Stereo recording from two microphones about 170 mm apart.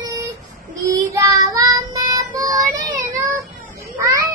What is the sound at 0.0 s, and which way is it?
Child singing, 20° right (ahead or behind).